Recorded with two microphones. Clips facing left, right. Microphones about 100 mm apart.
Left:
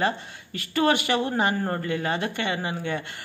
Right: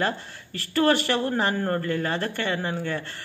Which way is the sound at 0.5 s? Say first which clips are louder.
Right 1 dB; 5° left (ahead or behind).